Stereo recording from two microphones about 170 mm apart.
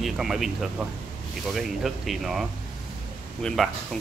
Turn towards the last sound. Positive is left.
turn(degrees=0)  # may be behind; listen again after turning